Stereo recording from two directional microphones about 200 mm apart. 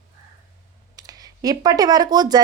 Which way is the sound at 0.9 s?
20° right (ahead or behind).